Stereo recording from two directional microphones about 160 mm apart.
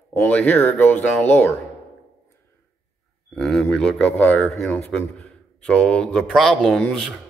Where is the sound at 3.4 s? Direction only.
5° left (ahead or behind).